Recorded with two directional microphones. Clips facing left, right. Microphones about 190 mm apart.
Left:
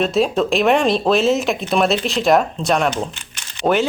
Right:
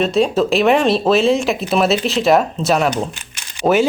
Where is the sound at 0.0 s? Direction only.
Centre (ahead or behind).